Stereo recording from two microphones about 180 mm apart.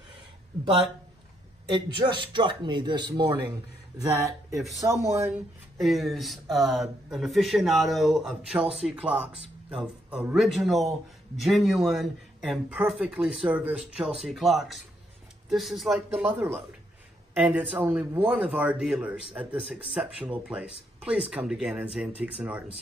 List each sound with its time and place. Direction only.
1.7 s a man's voice: 25° right (ahead or behind)
5.8 s speech: centre (ahead or behind)